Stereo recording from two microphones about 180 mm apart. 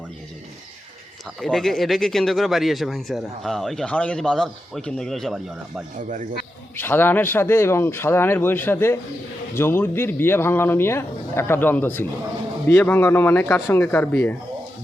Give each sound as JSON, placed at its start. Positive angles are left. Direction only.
{"t": 1.4, "sound": "speech", "side_deg": 0}
{"t": 6.0, "sound": "speech", "side_deg": -45}
{"t": 6.7, "sound": "speech", "side_deg": 10}